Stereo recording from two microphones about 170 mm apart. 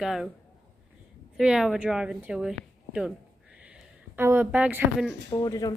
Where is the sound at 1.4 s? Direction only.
5° right (ahead or behind).